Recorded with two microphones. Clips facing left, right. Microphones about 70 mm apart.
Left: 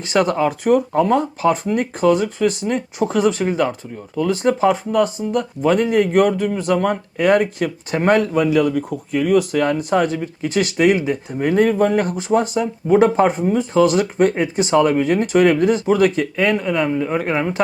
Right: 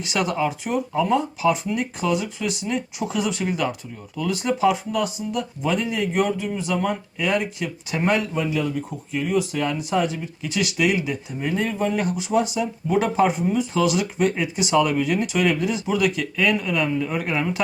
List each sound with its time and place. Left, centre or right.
0.0 s speech: left
8.3 s a man's voice: left
8.9 s speech: left